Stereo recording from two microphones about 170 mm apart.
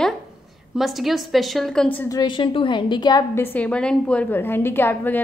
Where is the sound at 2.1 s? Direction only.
25° left (ahead or behind).